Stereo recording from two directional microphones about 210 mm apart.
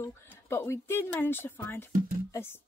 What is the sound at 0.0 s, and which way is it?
A woman's voice, 10° left (ahead or behind).